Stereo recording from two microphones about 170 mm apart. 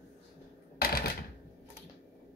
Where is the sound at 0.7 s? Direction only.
60° left (ahead or behind).